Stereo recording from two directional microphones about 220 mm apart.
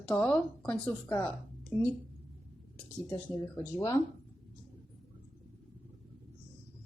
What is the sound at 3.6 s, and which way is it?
Speech, 10° left (ahead or behind).